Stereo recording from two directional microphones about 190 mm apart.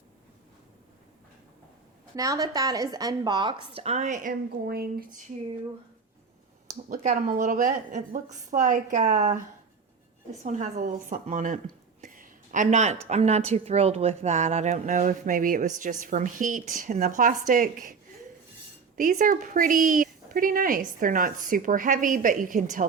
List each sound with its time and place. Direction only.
2.1 s speech: 20° right (ahead or behind)
3.8 s speech: 35° right (ahead or behind); by 5.2 s 50° right (ahead or behind)
6.8 s a woman's voice: 45° right (ahead or behind)
10.4 s a woman's voice: 40° right (ahead or behind)
12.0 s a sound: 45° right (ahead or behind)
13.1 s speech: 35° right (ahead or behind)
18.9 s speech: 45° right (ahead or behind)